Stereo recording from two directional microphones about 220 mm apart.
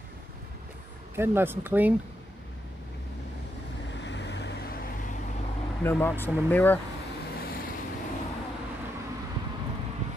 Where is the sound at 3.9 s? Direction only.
55° left (ahead or behind).